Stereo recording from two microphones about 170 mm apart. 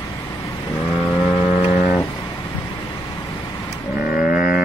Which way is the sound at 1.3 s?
15° left (ahead or behind).